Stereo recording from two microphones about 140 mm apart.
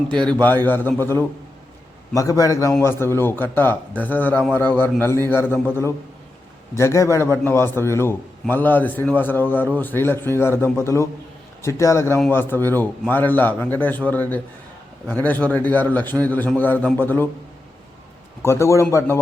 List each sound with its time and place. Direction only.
0.3 s a man's voice: 15° left (ahead or behind)
18.4 s speech: 20° left (ahead or behind)